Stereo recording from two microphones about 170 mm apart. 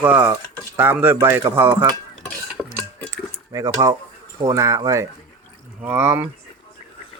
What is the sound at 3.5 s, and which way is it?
Speech, 20° right (ahead or behind).